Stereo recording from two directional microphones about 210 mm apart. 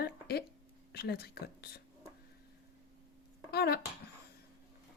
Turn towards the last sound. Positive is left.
turn(degrees=50)  # may be behind; listen again after turning